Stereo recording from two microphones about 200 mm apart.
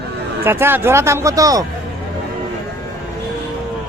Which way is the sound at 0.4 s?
10° right (ahead or behind).